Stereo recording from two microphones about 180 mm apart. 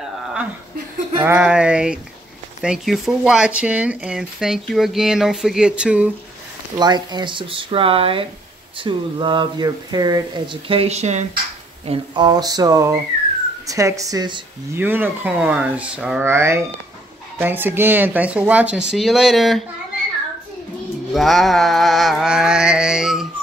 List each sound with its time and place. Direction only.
1.1 s speech: 10° right (ahead or behind)
6.8 s speech: 25° right (ahead or behind)
14.8 s speech: 10° right (ahead or behind)
21.1 s speech: centre (ahead or behind)